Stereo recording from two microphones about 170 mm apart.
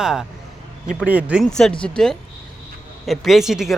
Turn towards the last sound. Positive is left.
turn(degrees=0)  # may be behind; listen again after turning